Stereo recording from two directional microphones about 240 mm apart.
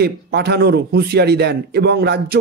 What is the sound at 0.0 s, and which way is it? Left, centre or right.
A man's voice, right.